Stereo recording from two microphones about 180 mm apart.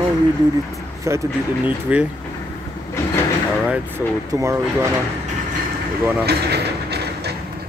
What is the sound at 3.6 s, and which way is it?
Speech, 15° right (ahead or behind).